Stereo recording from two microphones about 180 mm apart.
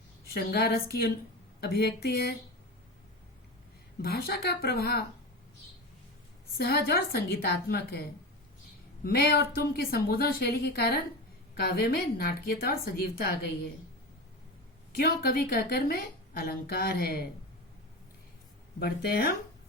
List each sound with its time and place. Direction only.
0.3 s a woman's voice: 60° left (ahead or behind)
4.0 s a woman's voice: 60° left (ahead or behind)
6.6 s a woman's voice: 60° left (ahead or behind)
9.0 s a woman's voice: 60° left (ahead or behind)
14.9 s a woman's voice: 60° left (ahead or behind)
18.8 s a woman's voice: 60° left (ahead or behind)